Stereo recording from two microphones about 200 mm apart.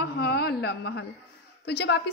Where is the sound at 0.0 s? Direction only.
55° left (ahead or behind).